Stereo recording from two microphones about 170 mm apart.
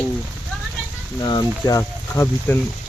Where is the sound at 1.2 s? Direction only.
25° left (ahead or behind).